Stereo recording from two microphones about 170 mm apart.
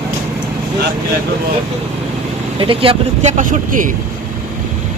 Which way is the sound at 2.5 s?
30° right (ahead or behind).